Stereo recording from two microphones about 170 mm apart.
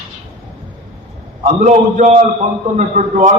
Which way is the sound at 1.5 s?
45° right (ahead or behind).